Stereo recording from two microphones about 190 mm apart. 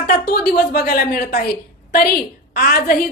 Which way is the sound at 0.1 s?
55° left (ahead or behind).